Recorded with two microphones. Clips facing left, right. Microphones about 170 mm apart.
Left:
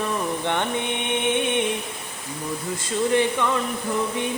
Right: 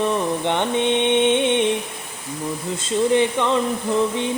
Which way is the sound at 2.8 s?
20° right (ahead or behind).